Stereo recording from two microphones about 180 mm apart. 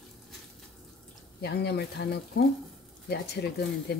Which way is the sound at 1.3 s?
65° left (ahead or behind).